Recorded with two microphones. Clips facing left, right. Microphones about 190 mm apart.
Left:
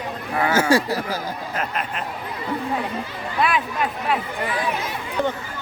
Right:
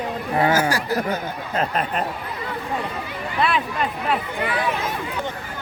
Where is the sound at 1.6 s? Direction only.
35° right (ahead or behind).